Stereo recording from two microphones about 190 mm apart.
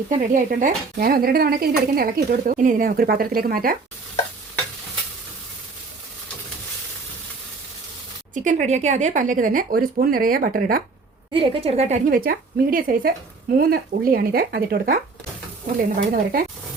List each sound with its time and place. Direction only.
0.1 s speech: 40° right (ahead or behind)
8.3 s speech: 45° right (ahead or behind)
11.3 s a woman's voice: 30° right (ahead or behind)
12.1 s speech: 50° right (ahead or behind)
16.0 s speech: 50° right (ahead or behind)